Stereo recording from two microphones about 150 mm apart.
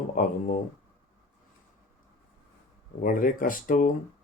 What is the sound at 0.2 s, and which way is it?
Speech, 65° left (ahead or behind).